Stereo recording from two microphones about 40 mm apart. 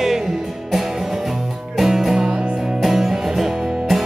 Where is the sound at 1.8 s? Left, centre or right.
Centre.